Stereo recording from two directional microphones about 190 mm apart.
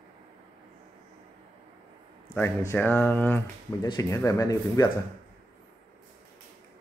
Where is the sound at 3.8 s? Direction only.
20° left (ahead or behind).